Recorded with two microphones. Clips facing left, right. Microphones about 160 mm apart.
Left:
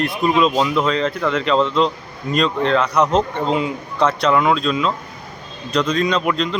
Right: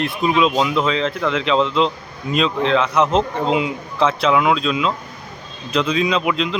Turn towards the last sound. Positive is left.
turn(degrees=0)  # may be behind; listen again after turning